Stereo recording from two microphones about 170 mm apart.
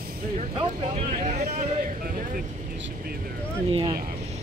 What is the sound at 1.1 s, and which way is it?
Speech, 40° right (ahead or behind).